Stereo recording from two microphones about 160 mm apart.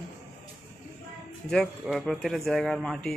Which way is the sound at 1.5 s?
5° left (ahead or behind).